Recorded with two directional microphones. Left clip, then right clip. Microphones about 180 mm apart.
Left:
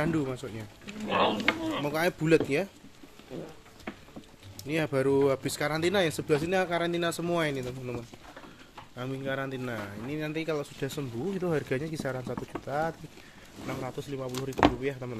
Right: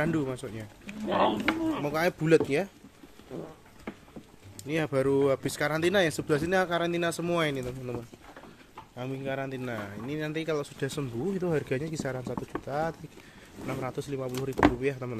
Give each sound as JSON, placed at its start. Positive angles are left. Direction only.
{"t": 0.0, "sound": "speech", "side_deg": -10}
{"t": 1.1, "sound": "speech", "side_deg": 20}
{"t": 1.8, "sound": "speech", "side_deg": -10}
{"t": 4.6, "sound": "speech", "side_deg": -5}
{"t": 13.7, "sound": "speech", "side_deg": -30}